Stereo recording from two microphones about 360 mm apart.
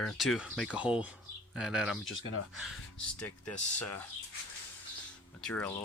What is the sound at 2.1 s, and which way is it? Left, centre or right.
Speech, left.